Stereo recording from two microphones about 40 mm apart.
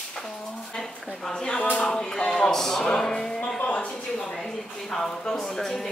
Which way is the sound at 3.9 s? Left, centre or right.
Left.